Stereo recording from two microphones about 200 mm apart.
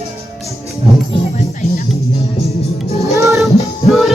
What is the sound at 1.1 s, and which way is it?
Music, 30° left (ahead or behind).